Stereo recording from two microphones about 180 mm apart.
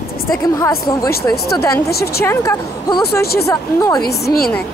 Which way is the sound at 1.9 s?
60° left (ahead or behind).